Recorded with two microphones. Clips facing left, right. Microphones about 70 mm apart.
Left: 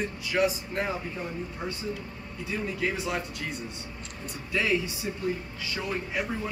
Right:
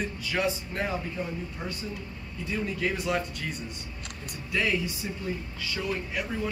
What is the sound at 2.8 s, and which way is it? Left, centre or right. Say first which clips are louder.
Speech: right 2 dB; centre.